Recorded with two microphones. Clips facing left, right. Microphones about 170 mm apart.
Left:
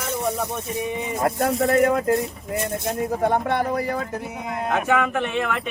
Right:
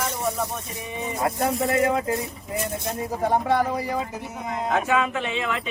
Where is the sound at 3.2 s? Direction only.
60° left (ahead or behind).